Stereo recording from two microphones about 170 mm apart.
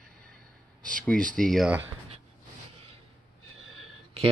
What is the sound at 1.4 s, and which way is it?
Speech, centre (ahead or behind).